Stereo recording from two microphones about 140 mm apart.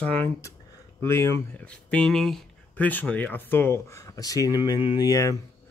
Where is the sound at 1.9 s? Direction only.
5° left (ahead or behind).